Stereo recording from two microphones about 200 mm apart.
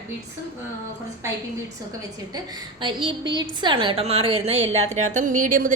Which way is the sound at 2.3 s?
25° right (ahead or behind).